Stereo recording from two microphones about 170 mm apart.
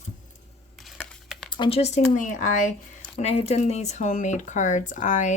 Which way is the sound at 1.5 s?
30° left (ahead or behind).